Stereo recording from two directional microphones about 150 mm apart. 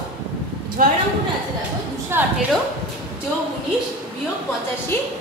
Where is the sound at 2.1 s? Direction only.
15° right (ahead or behind).